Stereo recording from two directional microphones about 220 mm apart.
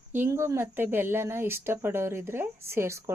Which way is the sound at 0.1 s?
10° right (ahead or behind).